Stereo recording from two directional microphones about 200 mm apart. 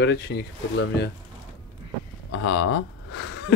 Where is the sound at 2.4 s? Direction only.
70° left (ahead or behind).